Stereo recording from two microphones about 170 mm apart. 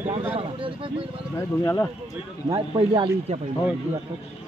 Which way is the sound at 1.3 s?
20° left (ahead or behind).